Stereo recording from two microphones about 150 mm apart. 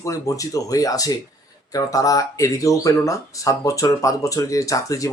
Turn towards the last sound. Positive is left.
turn(degrees=20)  # may be behind; listen again after turning